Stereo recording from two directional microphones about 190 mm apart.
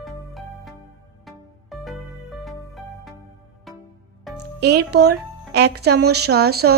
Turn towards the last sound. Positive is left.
turn(degrees=-55)  # may be behind; listen again after turning